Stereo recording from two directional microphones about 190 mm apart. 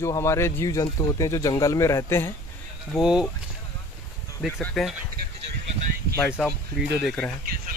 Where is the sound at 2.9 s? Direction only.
Centre (ahead or behind).